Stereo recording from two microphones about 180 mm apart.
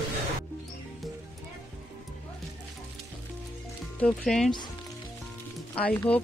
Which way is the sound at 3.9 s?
5° left (ahead or behind).